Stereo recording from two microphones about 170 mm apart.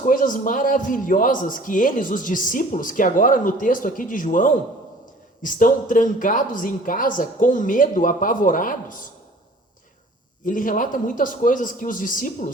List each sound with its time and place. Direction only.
0.0 s a man's voice: 50° left (ahead or behind)
10.4 s a man's voice: 50° left (ahead or behind)